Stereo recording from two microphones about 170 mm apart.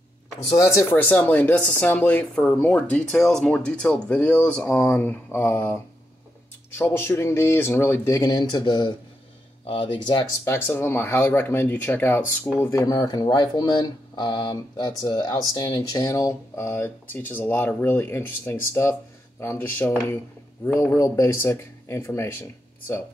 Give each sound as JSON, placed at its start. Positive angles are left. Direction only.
{"t": 0.6, "sound": "speech", "side_deg": 15}
{"t": 6.8, "sound": "speech", "side_deg": 15}
{"t": 10.4, "sound": "speech", "side_deg": 15}